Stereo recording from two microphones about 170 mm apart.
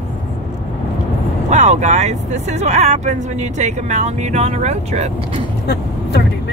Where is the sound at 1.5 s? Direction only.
40° right (ahead or behind).